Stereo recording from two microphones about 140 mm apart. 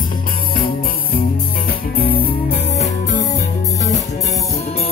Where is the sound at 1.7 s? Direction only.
90° left.